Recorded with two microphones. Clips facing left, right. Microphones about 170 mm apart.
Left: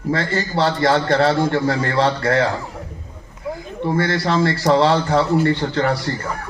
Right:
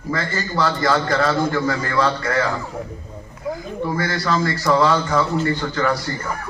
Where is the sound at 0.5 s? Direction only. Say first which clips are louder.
Left 2 dB; 25° left (ahead or behind).